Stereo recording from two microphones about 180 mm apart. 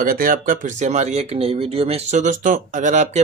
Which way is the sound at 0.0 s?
50° right (ahead or behind).